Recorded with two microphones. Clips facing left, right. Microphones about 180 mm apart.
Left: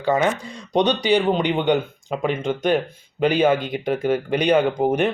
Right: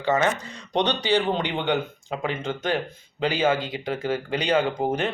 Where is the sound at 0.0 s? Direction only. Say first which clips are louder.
Left 3 dB; 10° left (ahead or behind).